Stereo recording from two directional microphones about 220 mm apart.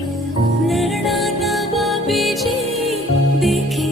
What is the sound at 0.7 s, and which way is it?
Music, centre (ahead or behind).